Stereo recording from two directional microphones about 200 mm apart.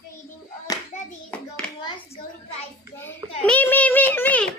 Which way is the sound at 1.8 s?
25° left (ahead or behind).